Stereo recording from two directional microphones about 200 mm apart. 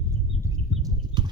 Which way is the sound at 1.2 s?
20° right (ahead or behind).